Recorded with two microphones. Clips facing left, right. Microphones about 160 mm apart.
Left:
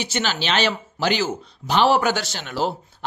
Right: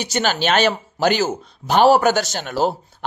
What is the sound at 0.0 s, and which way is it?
Speech, 45° right (ahead or behind).